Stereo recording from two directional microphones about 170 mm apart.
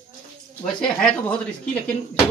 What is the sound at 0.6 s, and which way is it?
Speech, 5° left (ahead or behind).